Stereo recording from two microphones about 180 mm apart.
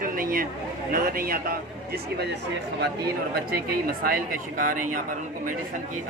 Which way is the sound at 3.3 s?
55° right (ahead or behind).